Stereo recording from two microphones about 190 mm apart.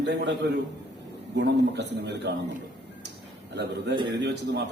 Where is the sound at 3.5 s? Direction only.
65° right (ahead or behind).